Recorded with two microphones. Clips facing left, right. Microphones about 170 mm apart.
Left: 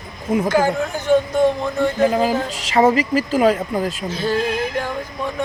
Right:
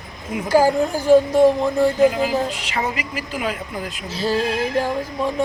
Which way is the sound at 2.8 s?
40° left (ahead or behind).